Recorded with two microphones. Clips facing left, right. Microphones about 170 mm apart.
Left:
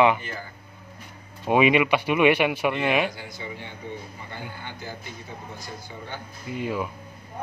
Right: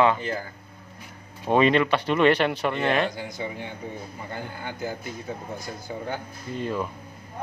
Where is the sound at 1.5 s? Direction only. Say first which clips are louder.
Even; 10° left (ahead or behind).